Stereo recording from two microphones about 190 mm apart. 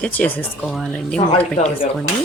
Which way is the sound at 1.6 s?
35° left (ahead or behind).